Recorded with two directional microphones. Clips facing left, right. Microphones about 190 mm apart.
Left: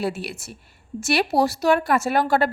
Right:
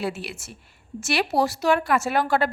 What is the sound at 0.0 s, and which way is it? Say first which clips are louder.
A woman's voice: left 3 dB; 40° left (ahead or behind).